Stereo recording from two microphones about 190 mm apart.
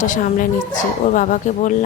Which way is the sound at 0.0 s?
45° left (ahead or behind).